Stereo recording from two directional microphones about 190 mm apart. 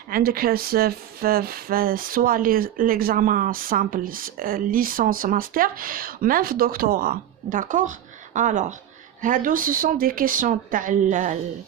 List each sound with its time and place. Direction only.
0.1 s speech: 50° right (ahead or behind)